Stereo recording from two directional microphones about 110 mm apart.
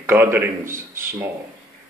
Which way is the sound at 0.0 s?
20° right (ahead or behind).